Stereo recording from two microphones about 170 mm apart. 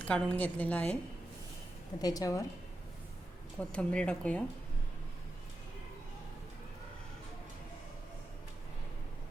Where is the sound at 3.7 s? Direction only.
5° left (ahead or behind).